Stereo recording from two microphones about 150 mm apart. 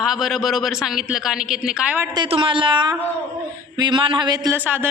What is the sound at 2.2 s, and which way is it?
A woman's voice, 35° right (ahead or behind).